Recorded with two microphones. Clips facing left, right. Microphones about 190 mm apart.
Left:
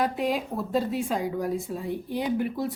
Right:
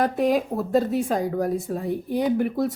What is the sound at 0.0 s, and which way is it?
Speech, 45° right (ahead or behind).